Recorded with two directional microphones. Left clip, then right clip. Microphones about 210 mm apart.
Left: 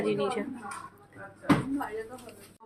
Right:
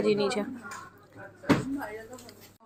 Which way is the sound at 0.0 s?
25° right (ahead or behind).